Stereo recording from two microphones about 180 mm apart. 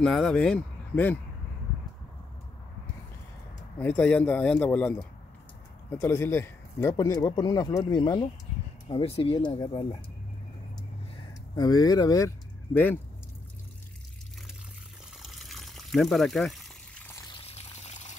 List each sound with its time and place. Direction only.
0.0 s speech: 5° left (ahead or behind)
3.8 s speech: 10° left (ahead or behind); by 9.9 s 25° left (ahead or behind)
11.5 s speech: 20° left (ahead or behind)
15.2 s water: centre (ahead or behind)
17.4 s water: 35° left (ahead or behind)